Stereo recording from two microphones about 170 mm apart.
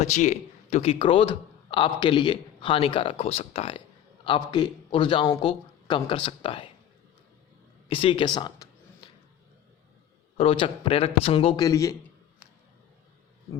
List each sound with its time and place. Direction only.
0.0 s a man's voice: 45° left (ahead or behind)
7.9 s speech: 30° left (ahead or behind)
9.0 s a sound: 30° left (ahead or behind)
10.3 s speech: 35° left (ahead or behind)
11.6 s speech: 20° left (ahead or behind)